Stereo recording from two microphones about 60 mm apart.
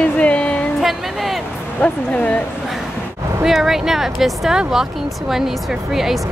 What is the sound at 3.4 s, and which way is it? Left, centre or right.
Speech, centre.